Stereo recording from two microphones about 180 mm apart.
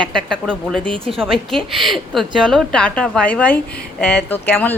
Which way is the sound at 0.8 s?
30° right (ahead or behind).